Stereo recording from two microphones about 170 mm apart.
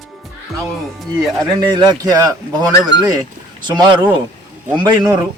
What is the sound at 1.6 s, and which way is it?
Speech, 25° right (ahead or behind).